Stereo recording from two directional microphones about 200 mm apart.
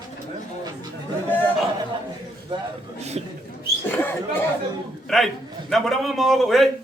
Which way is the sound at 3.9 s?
10° left (ahead or behind).